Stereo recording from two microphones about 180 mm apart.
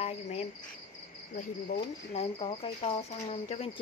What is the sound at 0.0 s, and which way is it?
Cricket, 35° left (ahead or behind).